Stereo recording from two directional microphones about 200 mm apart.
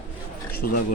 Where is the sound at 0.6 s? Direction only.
50° left (ahead or behind).